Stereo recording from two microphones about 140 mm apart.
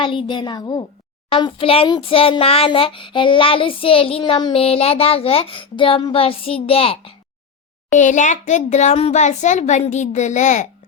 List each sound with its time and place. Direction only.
0.0 s a child's voice: 35° left (ahead or behind)
7.9 s a child's voice: 60° left (ahead or behind)